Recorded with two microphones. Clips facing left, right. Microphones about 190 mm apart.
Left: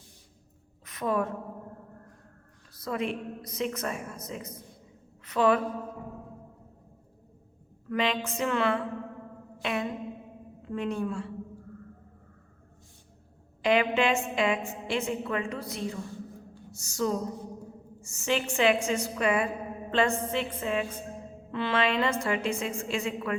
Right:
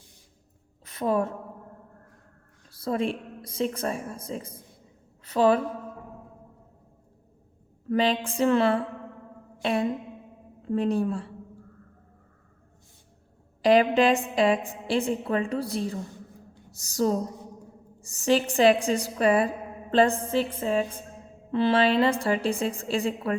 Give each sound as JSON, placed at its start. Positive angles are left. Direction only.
{"t": 0.9, "sound": "a woman's voice", "side_deg": -30}
{"t": 2.7, "sound": "a woman's voice", "side_deg": -30}
{"t": 7.9, "sound": "a woman's voice", "side_deg": -35}
{"t": 9.6, "sound": "a sound", "side_deg": -35}
{"t": 10.7, "sound": "a woman's voice", "side_deg": -35}
{"t": 13.6, "sound": "a woman's voice", "side_deg": -35}